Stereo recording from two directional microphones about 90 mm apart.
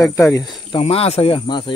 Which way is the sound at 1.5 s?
60° left (ahead or behind).